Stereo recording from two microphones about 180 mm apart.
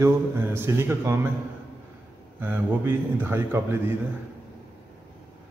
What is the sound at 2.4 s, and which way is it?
Speech, 10° right (ahead or behind).